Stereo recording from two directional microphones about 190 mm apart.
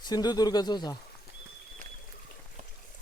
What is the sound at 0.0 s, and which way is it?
Speech, 20° left (ahead or behind).